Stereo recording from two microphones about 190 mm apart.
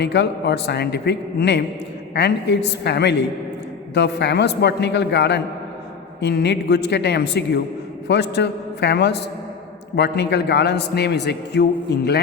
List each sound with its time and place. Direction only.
0.0 s a man's voice: 65° left (ahead or behind)